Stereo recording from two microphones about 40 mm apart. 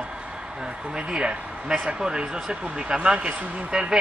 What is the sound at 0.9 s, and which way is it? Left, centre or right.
Speech, right.